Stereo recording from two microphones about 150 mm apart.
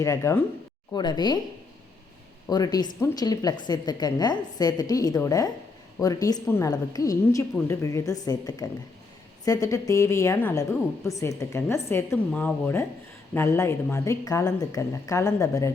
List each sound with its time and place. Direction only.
0.0 s speech: 20° left (ahead or behind)
0.9 s a woman's voice: 30° left (ahead or behind)
2.5 s a woman's voice: 25° left (ahead or behind)